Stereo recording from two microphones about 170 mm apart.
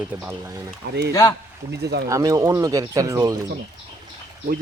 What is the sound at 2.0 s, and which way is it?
Speech, 20° right (ahead or behind).